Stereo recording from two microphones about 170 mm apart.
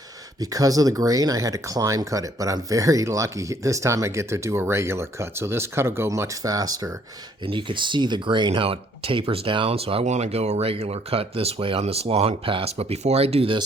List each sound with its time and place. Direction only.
0.5 s speech: 20° right (ahead or behind)